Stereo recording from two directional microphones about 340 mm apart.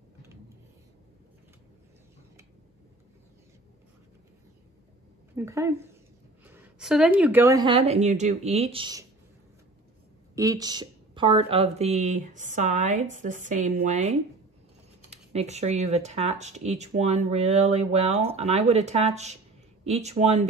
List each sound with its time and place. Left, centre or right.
5.3 s a woman's voice: centre
10.3 s speech: centre